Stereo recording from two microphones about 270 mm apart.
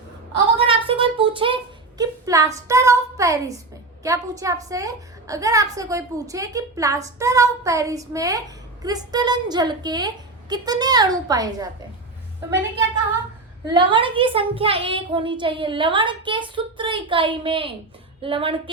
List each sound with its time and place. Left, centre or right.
0.5 s a sound: centre
2.0 s a woman's voice: centre
13.7 s a child's voice: centre